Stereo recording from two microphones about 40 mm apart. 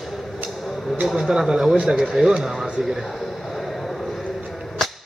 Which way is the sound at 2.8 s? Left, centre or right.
Centre.